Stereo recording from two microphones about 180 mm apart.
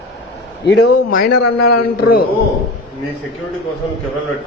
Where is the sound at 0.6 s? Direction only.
60° left (ahead or behind).